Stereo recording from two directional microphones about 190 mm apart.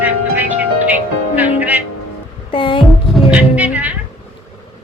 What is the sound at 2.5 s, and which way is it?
Hum, 25° left (ahead or behind).